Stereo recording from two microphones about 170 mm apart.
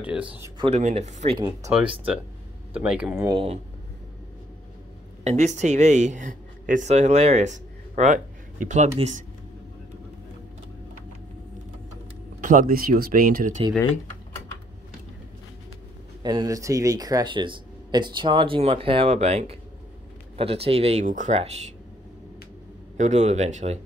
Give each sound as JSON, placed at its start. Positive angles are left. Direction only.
{"t": 0.0, "sound": "speech", "side_deg": -5}
{"t": 0.6, "sound": "speech", "side_deg": -40}
{"t": 2.7, "sound": "speech", "side_deg": -5}
{"t": 5.2, "sound": "speech", "side_deg": -40}
{"t": 12.4, "sound": "speech", "side_deg": -50}
{"t": 16.2, "sound": "speech", "side_deg": -25}
{"t": 22.9, "sound": "speech", "side_deg": -45}